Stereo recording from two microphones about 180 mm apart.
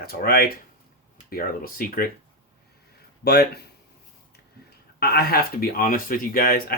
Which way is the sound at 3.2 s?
65° left (ahead or behind).